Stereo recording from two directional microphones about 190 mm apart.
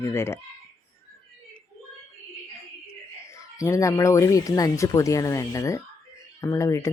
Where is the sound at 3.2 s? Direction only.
15° left (ahead or behind).